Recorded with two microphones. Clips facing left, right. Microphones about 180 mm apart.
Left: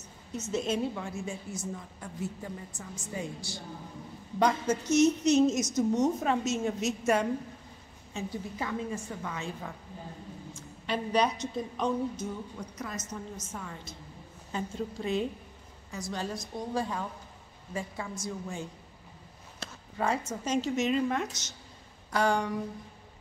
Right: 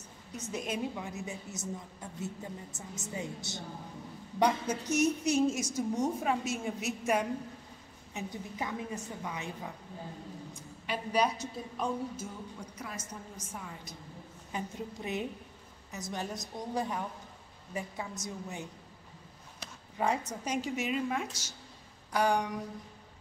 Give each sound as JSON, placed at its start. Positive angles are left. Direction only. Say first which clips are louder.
{"t": 0.4, "sound": "a woman's voice", "louder": "left 5 dB", "side_deg": -15}